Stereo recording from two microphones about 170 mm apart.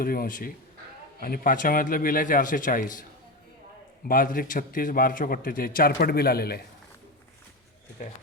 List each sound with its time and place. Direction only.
0.0 s a man's voice: 60° left (ahead or behind)
4.1 s a man's voice: 55° left (ahead or behind)